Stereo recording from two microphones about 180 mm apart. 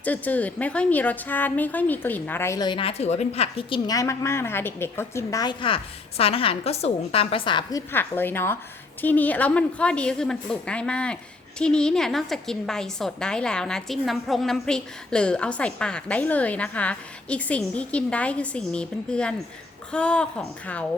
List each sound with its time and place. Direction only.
0.0 s a woman's voice: 10° left (ahead or behind); by 3.8 s 35° left (ahead or behind)
3.8 s a woman's voice: 15° left (ahead or behind)